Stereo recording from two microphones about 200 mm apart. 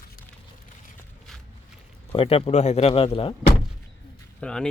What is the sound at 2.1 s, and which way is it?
Speech, 30° left (ahead or behind).